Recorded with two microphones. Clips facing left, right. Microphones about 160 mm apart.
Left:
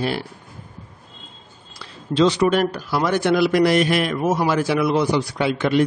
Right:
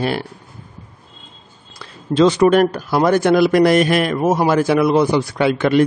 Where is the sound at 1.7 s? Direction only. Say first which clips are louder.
Right 4 dB; 50° right (ahead or behind).